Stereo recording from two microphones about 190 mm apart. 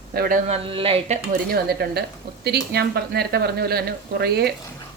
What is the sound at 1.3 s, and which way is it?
Speech, 55° right (ahead or behind).